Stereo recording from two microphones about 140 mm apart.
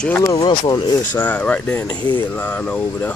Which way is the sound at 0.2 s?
25° left (ahead or behind).